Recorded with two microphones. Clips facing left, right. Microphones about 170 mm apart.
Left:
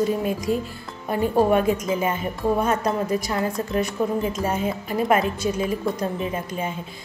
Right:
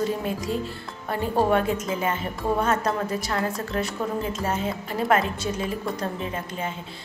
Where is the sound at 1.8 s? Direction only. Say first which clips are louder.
Left 3 dB; 15° left (ahead or behind).